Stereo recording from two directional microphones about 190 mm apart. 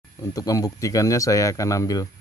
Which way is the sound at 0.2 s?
20° left (ahead or behind).